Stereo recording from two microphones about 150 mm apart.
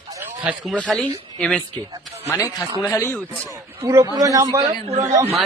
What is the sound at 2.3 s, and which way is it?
Speech, 20° left (ahead or behind).